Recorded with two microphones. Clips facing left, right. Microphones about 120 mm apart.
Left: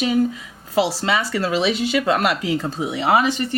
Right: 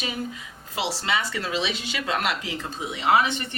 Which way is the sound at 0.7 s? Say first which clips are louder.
Left 7 dB; 45° left (ahead or behind).